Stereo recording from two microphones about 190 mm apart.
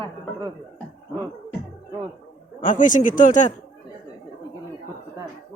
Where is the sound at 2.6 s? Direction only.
45° left (ahead or behind).